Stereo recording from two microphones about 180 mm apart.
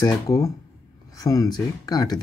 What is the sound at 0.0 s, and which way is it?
Speech, 20° left (ahead or behind).